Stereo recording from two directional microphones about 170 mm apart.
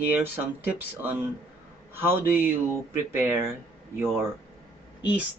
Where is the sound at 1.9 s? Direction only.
15° right (ahead or behind).